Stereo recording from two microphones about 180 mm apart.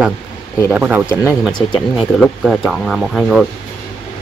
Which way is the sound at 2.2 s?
Centre (ahead or behind).